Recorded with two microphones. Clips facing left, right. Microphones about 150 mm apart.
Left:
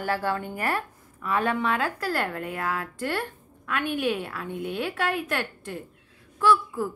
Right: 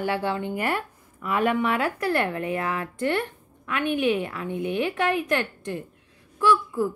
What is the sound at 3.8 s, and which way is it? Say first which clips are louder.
Speech: right 4 dB; 20° right (ahead or behind).